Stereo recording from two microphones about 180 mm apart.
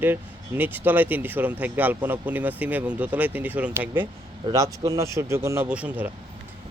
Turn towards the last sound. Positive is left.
turn(degrees=-10)  # may be behind; listen again after turning